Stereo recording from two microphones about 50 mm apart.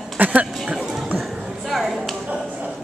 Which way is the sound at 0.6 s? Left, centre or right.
Centre.